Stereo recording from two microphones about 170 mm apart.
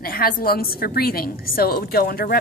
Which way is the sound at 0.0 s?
60° left (ahead or behind).